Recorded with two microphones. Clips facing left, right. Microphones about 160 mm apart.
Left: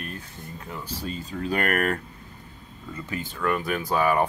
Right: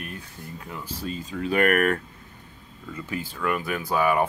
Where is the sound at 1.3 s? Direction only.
35° left (ahead or behind).